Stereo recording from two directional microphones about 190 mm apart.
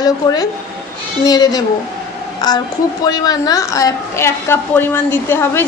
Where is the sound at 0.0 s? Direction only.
20° left (ahead or behind).